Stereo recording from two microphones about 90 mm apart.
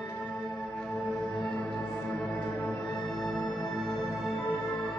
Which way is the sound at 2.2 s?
15° left (ahead or behind).